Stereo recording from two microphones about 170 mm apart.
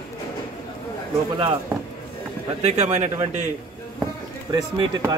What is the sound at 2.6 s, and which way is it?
Speech, 40° right (ahead or behind).